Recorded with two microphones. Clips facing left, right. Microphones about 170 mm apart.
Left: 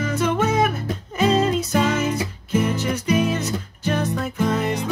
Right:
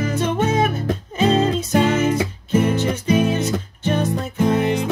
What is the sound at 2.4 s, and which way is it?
Music, 30° right (ahead or behind).